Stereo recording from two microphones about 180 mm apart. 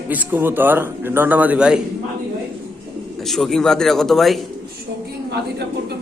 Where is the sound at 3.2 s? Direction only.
Centre (ahead or behind).